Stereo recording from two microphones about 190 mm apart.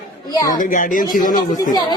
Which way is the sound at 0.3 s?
20° left (ahead or behind).